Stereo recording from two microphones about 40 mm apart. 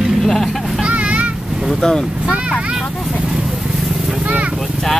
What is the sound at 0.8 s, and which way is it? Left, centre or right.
Vehicle, right.